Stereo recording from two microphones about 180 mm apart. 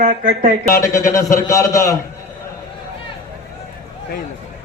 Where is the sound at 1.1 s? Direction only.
15° left (ahead or behind).